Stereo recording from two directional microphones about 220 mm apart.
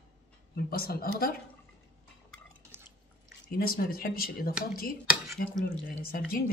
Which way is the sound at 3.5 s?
40° left (ahead or behind).